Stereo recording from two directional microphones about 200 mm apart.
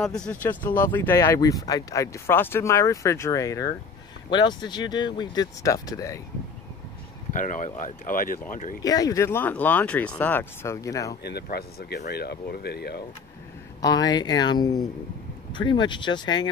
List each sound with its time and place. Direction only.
0.0 s speech: 5° left (ahead or behind)
7.3 s speech: 40° left (ahead or behind)
8.8 s speech: 20° left (ahead or behind)
11.2 s speech: 55° left (ahead or behind)
13.7 s speech: 20° left (ahead or behind)